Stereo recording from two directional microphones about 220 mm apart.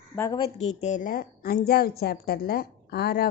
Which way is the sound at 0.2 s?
20° left (ahead or behind).